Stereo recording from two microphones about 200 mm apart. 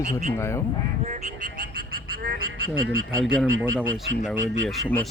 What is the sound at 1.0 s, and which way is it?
Speech, 40° right (ahead or behind).